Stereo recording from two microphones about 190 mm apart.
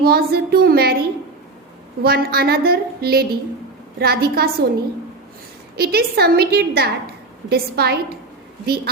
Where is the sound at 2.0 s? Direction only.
55° right (ahead or behind).